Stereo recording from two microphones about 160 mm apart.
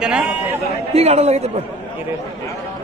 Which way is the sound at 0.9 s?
45° right (ahead or behind).